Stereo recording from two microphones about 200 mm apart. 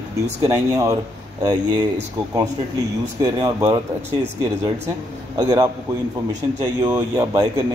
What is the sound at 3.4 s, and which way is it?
Speech, 20° right (ahead or behind).